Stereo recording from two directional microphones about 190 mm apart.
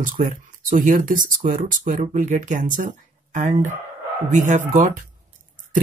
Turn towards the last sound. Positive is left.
turn(degrees=-40)  # may be behind; listen again after turning